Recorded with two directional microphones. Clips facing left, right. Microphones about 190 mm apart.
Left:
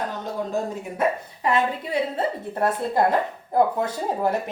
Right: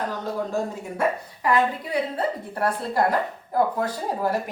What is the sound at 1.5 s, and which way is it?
A woman's voice, 25° left (ahead or behind).